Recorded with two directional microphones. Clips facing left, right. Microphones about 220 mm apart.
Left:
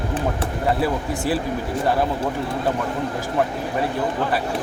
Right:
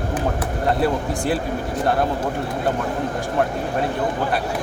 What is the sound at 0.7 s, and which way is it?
Speech, 5° left (ahead or behind).